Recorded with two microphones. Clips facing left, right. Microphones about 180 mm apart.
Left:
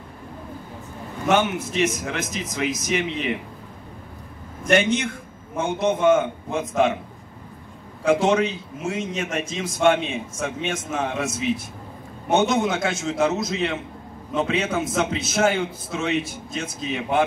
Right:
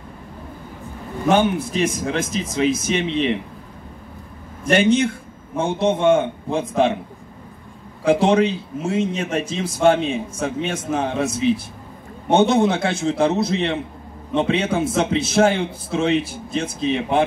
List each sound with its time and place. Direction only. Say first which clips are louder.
1.3 s speech: right 3 dB; 35° right (ahead or behind)
4.6 s a man's voice: right 4 dB; 30° right (ahead or behind)
8.0 s a man's voice: right 3 dB; 30° right (ahead or behind)